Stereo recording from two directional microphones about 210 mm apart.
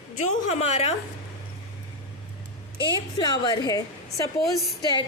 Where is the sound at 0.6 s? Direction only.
30° left (ahead or behind).